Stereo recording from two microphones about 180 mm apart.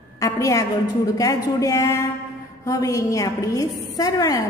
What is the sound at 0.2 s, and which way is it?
A woman's voice, 20° left (ahead or behind).